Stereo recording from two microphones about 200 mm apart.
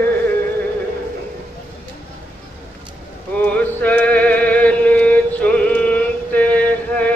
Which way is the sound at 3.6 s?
10° left (ahead or behind).